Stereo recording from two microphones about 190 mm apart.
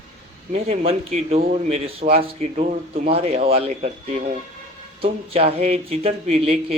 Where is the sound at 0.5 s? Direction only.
35° right (ahead or behind).